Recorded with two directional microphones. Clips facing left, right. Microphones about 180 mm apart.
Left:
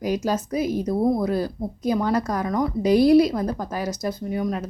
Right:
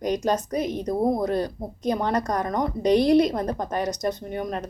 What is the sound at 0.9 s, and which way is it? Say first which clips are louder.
Speech: left 1 dB; 20° right (ahead or behind).